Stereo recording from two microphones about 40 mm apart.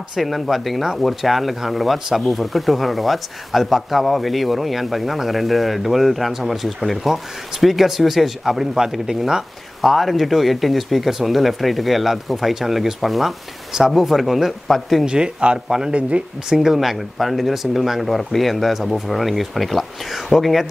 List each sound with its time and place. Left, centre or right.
0.2 s speech: centre
9.8 s speech: centre
15.0 s speech: right
16.4 s speech: centre